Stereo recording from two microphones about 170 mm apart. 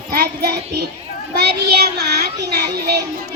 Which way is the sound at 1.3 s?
75° right (ahead or behind).